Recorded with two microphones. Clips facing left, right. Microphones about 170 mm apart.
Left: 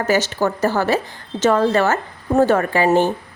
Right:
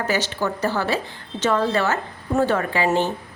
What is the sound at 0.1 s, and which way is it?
A woman's voice, 45° left (ahead or behind).